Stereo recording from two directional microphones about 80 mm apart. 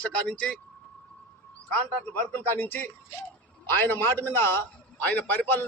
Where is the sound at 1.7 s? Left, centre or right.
Centre.